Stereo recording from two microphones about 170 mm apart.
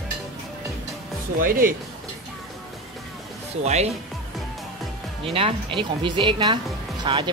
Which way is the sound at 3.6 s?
40° right (ahead or behind).